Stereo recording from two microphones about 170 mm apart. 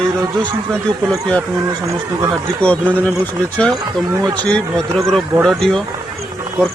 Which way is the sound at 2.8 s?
10° right (ahead or behind).